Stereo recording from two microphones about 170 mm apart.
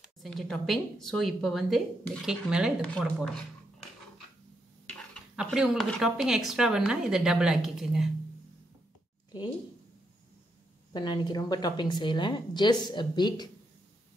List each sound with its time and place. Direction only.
0.2 s speech: centre (ahead or behind)
5.3 s speech: 5° right (ahead or behind)
10.9 s a woman's voice: 25° left (ahead or behind)